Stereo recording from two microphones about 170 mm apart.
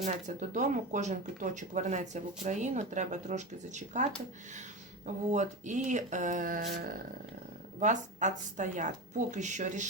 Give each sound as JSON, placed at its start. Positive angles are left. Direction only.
{"t": 0.0, "sound": "speech", "side_deg": -45}